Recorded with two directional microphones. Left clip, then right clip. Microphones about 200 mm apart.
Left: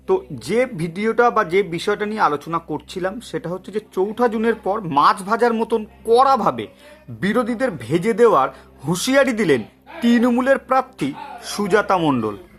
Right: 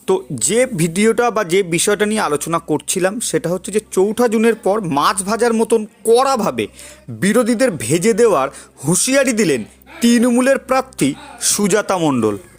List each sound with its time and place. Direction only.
0.1 s speech: 30° right (ahead or behind)
11.9 s a man's voice: 15° right (ahead or behind)